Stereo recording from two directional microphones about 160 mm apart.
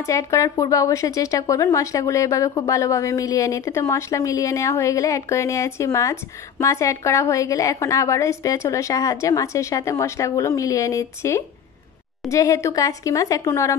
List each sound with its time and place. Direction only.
0.0 s a woman's voice: 20° left (ahead or behind)